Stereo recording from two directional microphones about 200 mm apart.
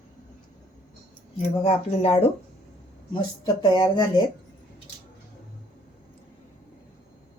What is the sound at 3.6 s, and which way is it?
Speech, 20° left (ahead or behind).